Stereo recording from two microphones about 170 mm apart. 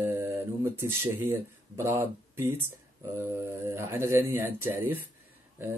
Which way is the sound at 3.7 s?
15° right (ahead or behind).